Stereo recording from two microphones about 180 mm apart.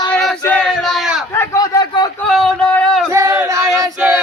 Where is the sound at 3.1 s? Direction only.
15° right (ahead or behind).